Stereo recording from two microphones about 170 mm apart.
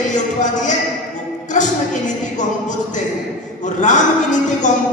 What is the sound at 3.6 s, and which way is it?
Music, 45° left (ahead or behind).